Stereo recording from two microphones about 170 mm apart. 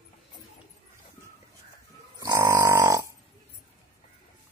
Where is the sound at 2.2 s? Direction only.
20° right (ahead or behind).